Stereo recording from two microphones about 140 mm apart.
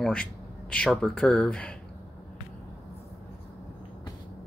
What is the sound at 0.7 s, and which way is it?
Speech, 5° left (ahead or behind).